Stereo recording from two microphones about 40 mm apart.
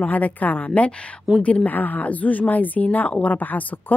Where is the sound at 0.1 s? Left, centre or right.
Left.